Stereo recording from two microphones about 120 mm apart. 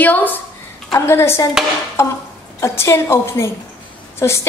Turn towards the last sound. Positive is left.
turn(degrees=25)  # may be behind; listen again after turning